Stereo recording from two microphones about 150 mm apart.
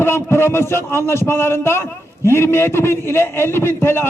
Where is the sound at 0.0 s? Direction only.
15° left (ahead or behind).